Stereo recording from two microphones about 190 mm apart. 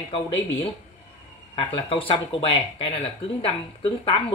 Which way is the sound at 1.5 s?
30° left (ahead or behind).